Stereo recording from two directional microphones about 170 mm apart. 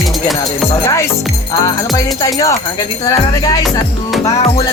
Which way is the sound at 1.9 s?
20° left (ahead or behind).